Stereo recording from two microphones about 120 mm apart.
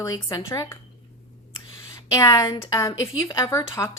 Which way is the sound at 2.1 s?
30° left (ahead or behind).